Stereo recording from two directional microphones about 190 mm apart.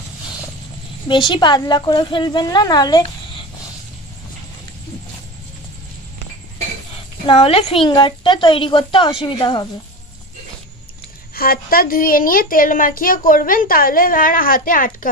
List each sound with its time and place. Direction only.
1.0 s a woman's voice: 25° left (ahead or behind)
7.2 s a woman's voice: 30° left (ahead or behind)
11.3 s a woman's voice: 50° left (ahead or behind)